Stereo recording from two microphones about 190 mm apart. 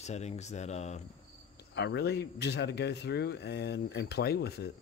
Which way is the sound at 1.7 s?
65° left (ahead or behind).